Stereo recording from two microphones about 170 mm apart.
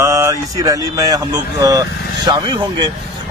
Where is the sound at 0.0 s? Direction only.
15° right (ahead or behind).